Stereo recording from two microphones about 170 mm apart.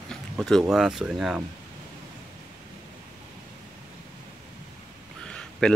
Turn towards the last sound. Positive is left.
turn(degrees=5)  # may be behind; listen again after turning